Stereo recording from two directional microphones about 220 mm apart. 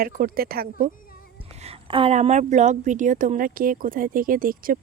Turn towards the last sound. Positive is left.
turn(degrees=-40)  # may be behind; listen again after turning